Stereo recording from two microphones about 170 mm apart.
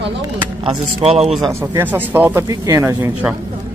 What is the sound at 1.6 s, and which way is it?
Speech, 10° right (ahead or behind).